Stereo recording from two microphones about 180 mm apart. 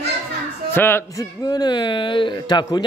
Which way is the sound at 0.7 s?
15° left (ahead or behind).